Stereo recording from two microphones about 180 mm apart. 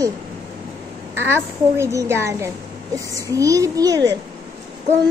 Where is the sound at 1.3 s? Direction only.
15° right (ahead or behind).